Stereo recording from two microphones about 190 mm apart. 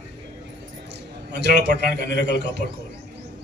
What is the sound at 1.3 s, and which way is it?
Speech, 60° right (ahead or behind).